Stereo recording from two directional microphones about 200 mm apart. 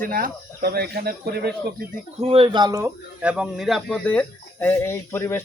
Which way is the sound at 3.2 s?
5° right (ahead or behind).